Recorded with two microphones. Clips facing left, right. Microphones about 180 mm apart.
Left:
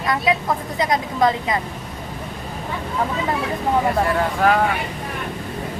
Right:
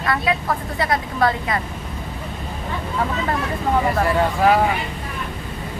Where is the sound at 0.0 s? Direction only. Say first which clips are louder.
Left 1 dB; 20° left (ahead or behind).